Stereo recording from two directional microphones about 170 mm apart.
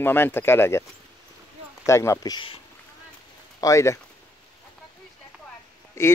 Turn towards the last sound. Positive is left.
turn(degrees=15)  # may be behind; listen again after turning